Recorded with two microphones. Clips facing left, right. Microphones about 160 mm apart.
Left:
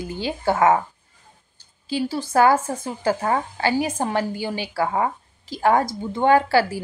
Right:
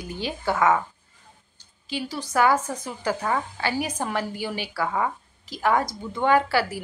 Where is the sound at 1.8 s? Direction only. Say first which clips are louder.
Left 6 dB; 30° left (ahead or behind).